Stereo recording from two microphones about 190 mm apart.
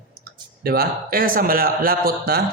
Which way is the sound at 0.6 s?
50° right (ahead or behind).